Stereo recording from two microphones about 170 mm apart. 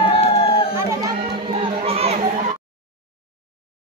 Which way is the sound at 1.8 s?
35° right (ahead or behind).